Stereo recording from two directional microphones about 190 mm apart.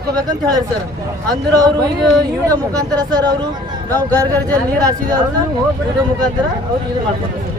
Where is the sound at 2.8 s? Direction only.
20° right (ahead or behind).